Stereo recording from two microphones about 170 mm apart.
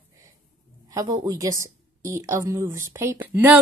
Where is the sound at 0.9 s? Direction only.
25° right (ahead or behind).